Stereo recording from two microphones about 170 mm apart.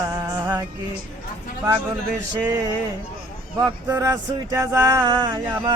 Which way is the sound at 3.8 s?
15° right (ahead or behind).